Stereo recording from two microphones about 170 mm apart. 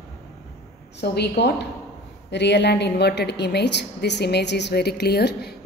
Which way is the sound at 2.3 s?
90° left.